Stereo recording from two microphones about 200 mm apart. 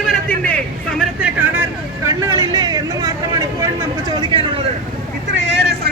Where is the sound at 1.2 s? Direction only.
10° right (ahead or behind); by 4.6 s 25° right (ahead or behind).